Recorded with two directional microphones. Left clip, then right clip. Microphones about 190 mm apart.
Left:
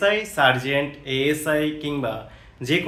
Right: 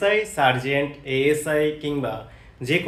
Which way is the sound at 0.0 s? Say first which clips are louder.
Left 1 dB; 20° left (ahead or behind).